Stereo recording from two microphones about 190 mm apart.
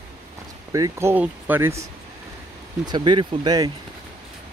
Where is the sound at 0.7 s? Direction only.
15° right (ahead or behind).